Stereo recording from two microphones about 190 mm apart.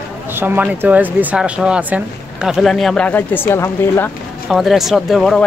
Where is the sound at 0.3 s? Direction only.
10° right (ahead or behind); by 4.1 s 15° left (ahead or behind).